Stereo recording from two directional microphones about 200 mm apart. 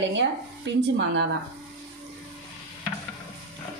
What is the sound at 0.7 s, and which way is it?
Speech, 60° right (ahead or behind).